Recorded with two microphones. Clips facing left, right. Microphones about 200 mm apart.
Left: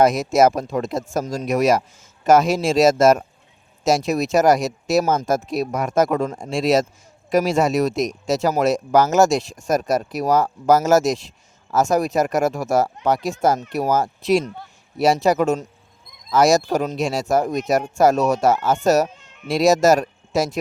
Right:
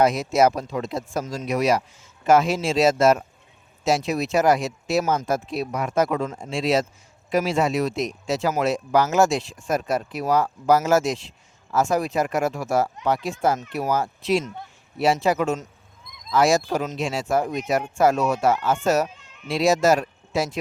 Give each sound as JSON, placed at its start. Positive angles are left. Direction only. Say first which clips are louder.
{"t": 0.0, "sound": "speech", "louder": "left 3 dB", "side_deg": 45}